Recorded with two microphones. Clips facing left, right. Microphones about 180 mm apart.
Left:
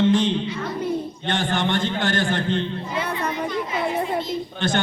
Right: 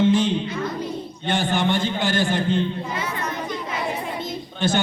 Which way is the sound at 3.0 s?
60° left (ahead or behind).